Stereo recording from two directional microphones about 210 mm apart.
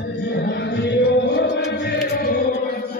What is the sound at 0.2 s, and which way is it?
Music, 55° left (ahead or behind).